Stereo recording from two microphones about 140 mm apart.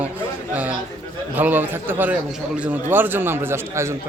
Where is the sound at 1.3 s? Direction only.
15° right (ahead or behind).